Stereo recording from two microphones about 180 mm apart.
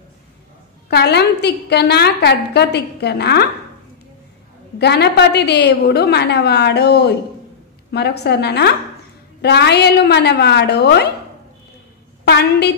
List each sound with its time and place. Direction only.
0.8 s a woman's voice: 65° left (ahead or behind)
4.7 s a woman's voice: 65° left (ahead or behind)
12.3 s a woman's voice: 65° left (ahead or behind)